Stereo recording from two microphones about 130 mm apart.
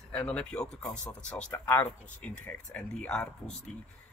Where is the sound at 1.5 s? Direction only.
20° left (ahead or behind).